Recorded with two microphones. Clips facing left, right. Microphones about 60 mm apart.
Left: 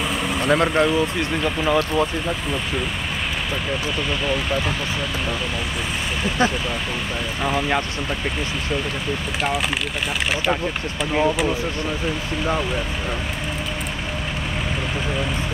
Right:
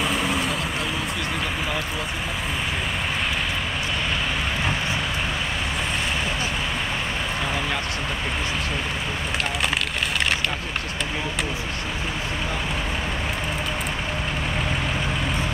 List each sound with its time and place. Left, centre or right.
0.1 s vehicle: centre
0.5 s speech: left